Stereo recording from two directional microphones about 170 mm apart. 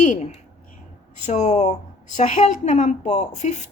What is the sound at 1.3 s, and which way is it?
Speech, 45° left (ahead or behind).